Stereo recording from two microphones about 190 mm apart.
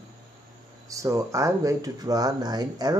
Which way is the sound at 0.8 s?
15° right (ahead or behind).